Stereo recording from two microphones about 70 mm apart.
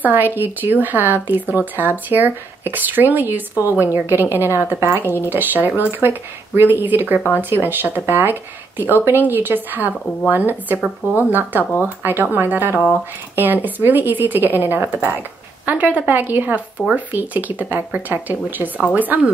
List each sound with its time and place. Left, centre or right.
0.0 s a woman's voice: right